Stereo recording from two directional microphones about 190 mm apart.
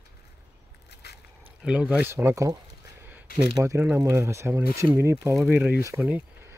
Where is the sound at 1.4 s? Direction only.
5° right (ahead or behind).